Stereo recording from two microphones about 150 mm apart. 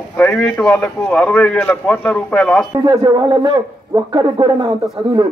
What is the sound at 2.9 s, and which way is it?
A man's voice, 30° right (ahead or behind).